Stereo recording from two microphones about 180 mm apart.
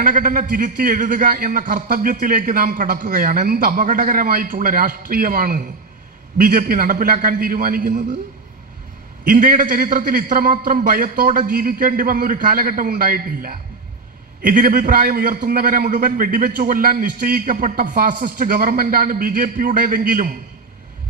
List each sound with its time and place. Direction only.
0.0 s a man's voice: 50° right (ahead or behind)
9.2 s a man's voice: 50° right (ahead or behind)